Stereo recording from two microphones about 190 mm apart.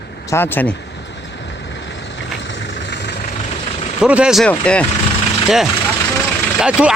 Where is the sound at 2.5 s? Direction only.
60° left (ahead or behind).